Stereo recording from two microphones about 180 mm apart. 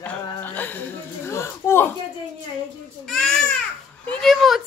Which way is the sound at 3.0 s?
5° left (ahead or behind).